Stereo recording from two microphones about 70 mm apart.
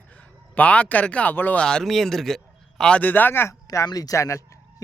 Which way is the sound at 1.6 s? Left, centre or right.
Centre.